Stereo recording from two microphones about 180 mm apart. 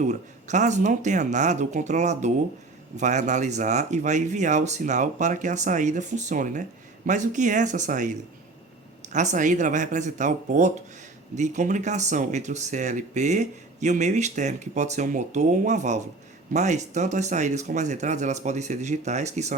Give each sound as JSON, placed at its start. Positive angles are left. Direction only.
{"t": 0.0, "sound": "speech", "side_deg": -40}
{"t": 9.1, "sound": "speech", "side_deg": -45}